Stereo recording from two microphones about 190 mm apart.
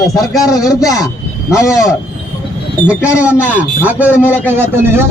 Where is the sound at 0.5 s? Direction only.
20° left (ahead or behind).